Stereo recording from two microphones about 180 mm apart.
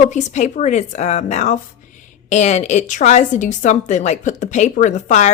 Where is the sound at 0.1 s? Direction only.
40° left (ahead or behind).